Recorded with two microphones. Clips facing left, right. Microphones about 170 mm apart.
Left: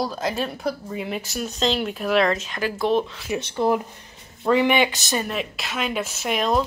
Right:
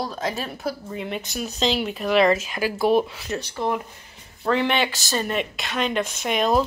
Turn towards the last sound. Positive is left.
turn(degrees=0)  # may be behind; listen again after turning